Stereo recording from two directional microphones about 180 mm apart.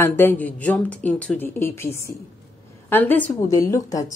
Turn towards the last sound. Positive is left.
turn(degrees=15)  # may be behind; listen again after turning